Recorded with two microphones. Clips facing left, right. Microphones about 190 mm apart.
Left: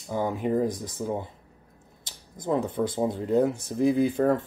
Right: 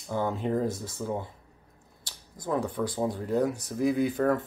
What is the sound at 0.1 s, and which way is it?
Speech, 15° left (ahead or behind).